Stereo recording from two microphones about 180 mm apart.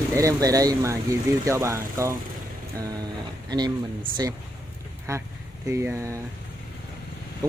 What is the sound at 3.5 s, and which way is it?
Speech, 20° right (ahead or behind).